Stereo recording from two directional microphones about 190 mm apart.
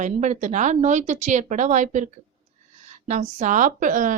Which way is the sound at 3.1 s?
40° right (ahead or behind).